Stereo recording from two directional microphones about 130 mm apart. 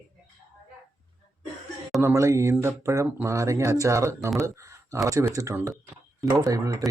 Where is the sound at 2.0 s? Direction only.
20° right (ahead or behind).